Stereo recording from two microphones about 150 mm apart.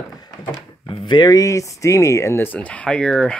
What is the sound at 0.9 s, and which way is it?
Speech, 35° left (ahead or behind).